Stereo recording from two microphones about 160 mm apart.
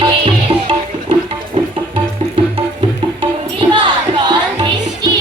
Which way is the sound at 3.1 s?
30° right (ahead or behind).